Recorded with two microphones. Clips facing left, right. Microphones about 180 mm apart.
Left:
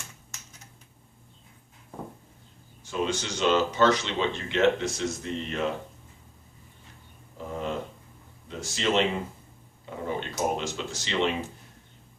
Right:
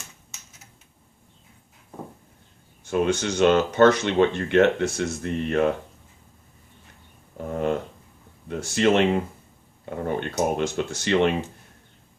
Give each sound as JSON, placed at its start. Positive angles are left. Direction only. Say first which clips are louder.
{"t": 2.8, "sound": "speech", "louder": "right 7 dB", "side_deg": -55}
{"t": 7.3, "sound": "a sound", "louder": "right 7 dB", "side_deg": -55}
{"t": 8.4, "sound": "speech", "louder": "right 8 dB", "side_deg": -55}